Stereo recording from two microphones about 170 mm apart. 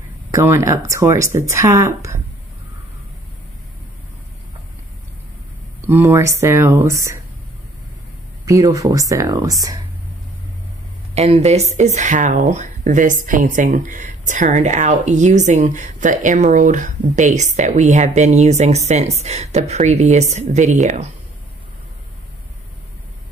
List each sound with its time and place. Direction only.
0.3 s speech: 15° right (ahead or behind)
5.8 s speech: 15° right (ahead or behind)
8.5 s speech: 20° right (ahead or behind)
11.1 s speech: 40° right (ahead or behind)